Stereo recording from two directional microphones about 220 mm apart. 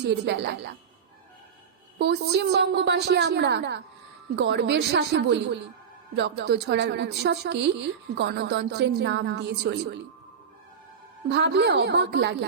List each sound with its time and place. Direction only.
0.0 s a woman's voice: 50° right (ahead or behind)
2.0 s a woman's voice: 50° right (ahead or behind)
11.3 s a woman's voice: 50° right (ahead or behind)